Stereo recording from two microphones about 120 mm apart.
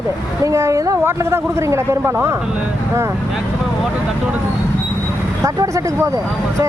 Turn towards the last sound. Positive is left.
turn(degrees=-25)  # may be behind; listen again after turning